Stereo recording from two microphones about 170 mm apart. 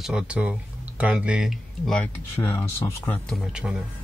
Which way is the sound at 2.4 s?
15° left (ahead or behind).